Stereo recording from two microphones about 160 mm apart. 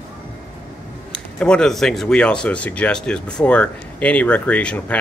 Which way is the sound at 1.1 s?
5° left (ahead or behind).